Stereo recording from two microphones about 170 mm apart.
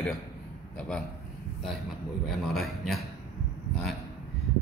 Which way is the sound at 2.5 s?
Centre (ahead or behind).